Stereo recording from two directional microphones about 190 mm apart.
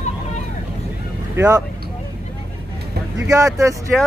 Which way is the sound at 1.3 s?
15° right (ahead or behind).